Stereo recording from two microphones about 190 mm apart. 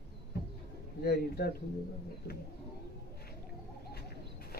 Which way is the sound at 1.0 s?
55° left (ahead or behind).